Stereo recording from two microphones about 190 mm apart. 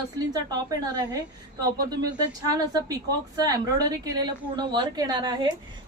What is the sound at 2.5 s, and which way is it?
A woman's voice, 20° right (ahead or behind).